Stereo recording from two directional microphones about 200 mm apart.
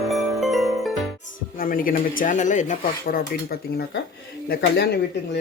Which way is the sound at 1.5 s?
45° left (ahead or behind).